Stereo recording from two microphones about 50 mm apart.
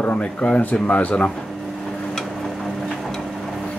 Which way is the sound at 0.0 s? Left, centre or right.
Left.